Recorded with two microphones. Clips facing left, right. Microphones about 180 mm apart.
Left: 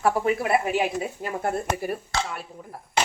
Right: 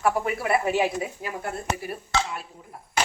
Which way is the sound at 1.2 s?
45° left (ahead or behind).